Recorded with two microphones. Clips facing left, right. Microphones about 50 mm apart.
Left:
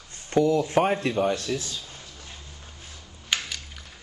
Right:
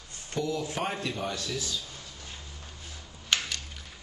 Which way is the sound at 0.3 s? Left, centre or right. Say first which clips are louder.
Left 10 dB; left.